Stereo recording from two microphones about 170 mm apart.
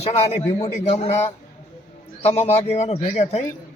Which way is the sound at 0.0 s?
40° left (ahead or behind).